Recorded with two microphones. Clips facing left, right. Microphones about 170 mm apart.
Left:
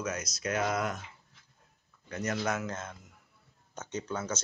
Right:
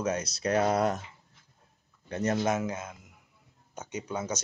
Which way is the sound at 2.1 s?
30° right (ahead or behind).